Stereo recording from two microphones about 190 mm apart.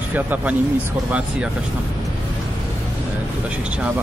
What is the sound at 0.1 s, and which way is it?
Speech, 10° right (ahead or behind).